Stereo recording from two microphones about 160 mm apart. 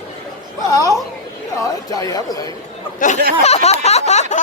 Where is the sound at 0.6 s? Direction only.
20° left (ahead or behind).